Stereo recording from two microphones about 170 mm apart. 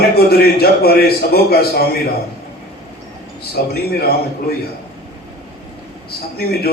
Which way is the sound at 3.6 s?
65° left (ahead or behind).